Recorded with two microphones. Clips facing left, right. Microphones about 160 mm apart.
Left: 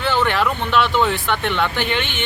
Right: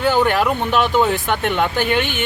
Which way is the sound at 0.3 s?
10° right (ahead or behind).